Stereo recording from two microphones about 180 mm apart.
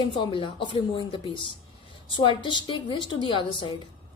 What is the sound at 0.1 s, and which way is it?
A woman's voice, 30° left (ahead or behind).